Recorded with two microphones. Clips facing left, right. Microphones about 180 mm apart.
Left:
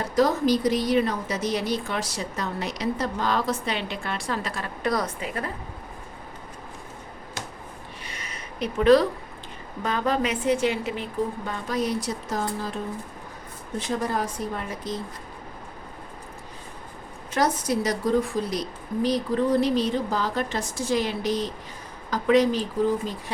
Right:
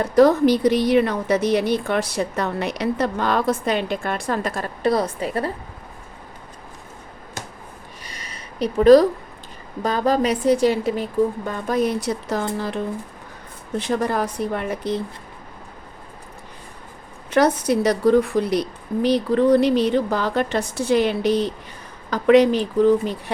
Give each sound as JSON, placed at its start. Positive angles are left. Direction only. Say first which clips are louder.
{"t": 0.0, "sound": "speech", "louder": "right 7 dB", "side_deg": -60}
{"t": 4.8, "sound": "a woman's voice", "louder": "right 6 dB", "side_deg": -30}
{"t": 8.0, "sound": "a sound", "louder": "even", "side_deg": -35}
{"t": 9.8, "sound": "a woman's voice", "louder": "right 5 dB", "side_deg": -35}
{"t": 17.3, "sound": "speech", "louder": "right 6 dB", "side_deg": -65}